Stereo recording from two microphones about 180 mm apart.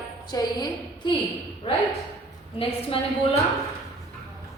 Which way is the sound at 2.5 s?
30° left (ahead or behind).